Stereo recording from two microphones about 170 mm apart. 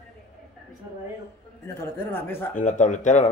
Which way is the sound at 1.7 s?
15° left (ahead or behind).